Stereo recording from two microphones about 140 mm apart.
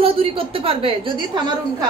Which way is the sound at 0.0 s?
40° right (ahead or behind).